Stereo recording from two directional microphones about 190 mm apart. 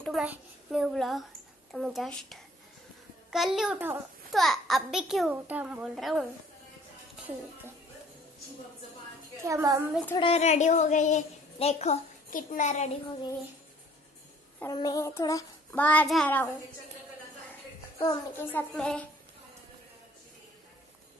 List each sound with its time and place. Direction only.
0.0 s a child's voice: 5° right (ahead or behind)
3.7 s a woman's voice: 10° right (ahead or behind)
4.3 s a child's voice: centre (ahead or behind)
9.4 s a woman's voice: 15° right (ahead or behind)
10.1 s a woman's voice: 30° left (ahead or behind)
14.6 s child singing: 20° left (ahead or behind)
17.9 s child singing: 15° left (ahead or behind)